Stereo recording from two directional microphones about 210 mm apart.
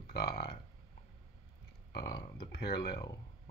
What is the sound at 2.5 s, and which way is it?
Speech, 50° left (ahead or behind).